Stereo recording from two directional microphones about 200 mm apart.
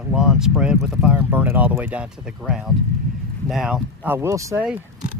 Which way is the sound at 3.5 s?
5° right (ahead or behind).